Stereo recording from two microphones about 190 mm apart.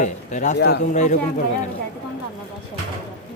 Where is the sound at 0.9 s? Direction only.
40° left (ahead or behind).